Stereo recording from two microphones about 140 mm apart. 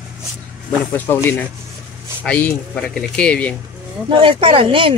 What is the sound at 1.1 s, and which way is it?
Speech, 15° left (ahead or behind).